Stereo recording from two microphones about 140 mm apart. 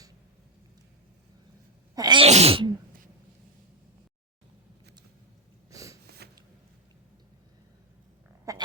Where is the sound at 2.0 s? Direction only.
30° right (ahead or behind).